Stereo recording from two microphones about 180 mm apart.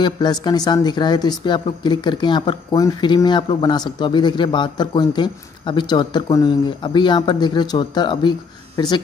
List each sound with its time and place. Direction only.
0.0 s speech: 25° left (ahead or behind)